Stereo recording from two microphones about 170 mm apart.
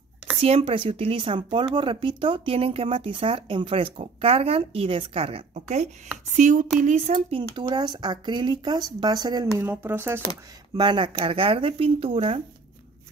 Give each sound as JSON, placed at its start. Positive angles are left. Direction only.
{"t": 0.4, "sound": "speech", "side_deg": -35}
{"t": 6.3, "sound": "a sound", "side_deg": -45}
{"t": 6.8, "sound": "speech", "side_deg": -45}
{"t": 9.6, "sound": "speech", "side_deg": -15}
{"t": 10.8, "sound": "speech", "side_deg": -30}